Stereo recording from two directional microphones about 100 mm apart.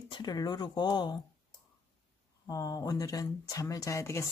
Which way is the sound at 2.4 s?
35° left (ahead or behind).